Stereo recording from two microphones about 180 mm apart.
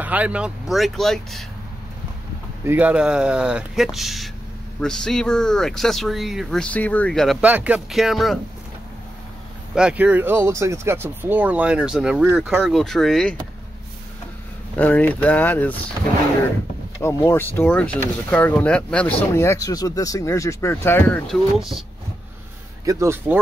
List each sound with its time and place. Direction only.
0.0 s speech: 10° right (ahead or behind)
2.6 s speech: 10° right (ahead or behind)
7.4 s speech: 10° right (ahead or behind)
9.8 s speech: 5° right (ahead or behind)
14.8 s speech: 10° left (ahead or behind)
17.0 s speech: 15° left (ahead or behind)
21.3 s speech: centre (ahead or behind)
22.8 s speech: 15° right (ahead or behind)